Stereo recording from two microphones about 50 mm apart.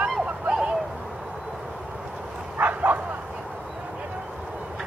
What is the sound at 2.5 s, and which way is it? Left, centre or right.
Bow-wow, right.